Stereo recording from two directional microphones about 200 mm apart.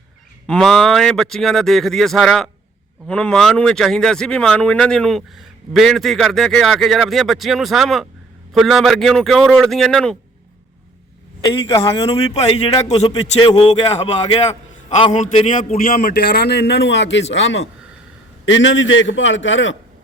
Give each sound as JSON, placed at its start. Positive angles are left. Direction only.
{"t": 0.4, "sound": "speech", "side_deg": 5}
{"t": 11.4, "sound": "a man's voice", "side_deg": 20}
{"t": 12.0, "sound": "a man's voice", "side_deg": 30}